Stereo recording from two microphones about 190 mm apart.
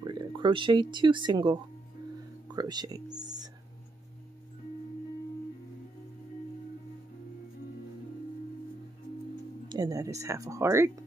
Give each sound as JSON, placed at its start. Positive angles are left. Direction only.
{"t": 0.0, "sound": "speech", "side_deg": -25}
{"t": 9.7, "sound": "speech", "side_deg": -20}